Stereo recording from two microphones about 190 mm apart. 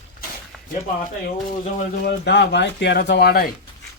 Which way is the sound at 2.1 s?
65° left (ahead or behind).